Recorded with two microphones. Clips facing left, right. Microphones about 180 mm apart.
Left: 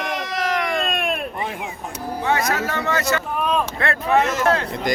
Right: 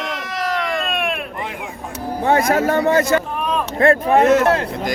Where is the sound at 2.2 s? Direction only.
55° right (ahead or behind).